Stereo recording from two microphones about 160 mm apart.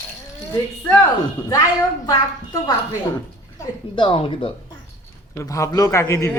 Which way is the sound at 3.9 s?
35° left (ahead or behind).